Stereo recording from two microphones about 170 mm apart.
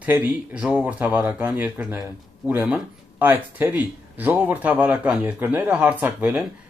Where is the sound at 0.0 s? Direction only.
10° right (ahead or behind).